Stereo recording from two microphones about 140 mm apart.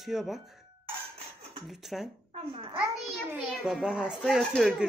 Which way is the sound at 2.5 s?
40° right (ahead or behind).